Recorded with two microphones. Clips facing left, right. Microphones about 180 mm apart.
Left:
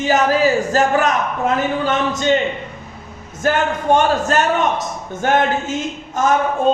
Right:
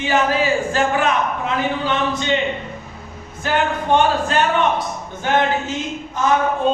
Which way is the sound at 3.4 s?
45° left (ahead or behind).